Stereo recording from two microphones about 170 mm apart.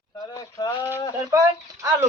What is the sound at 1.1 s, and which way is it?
Speech, 20° right (ahead or behind).